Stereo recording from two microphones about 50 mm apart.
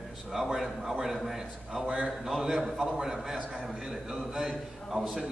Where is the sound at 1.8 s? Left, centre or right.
Right.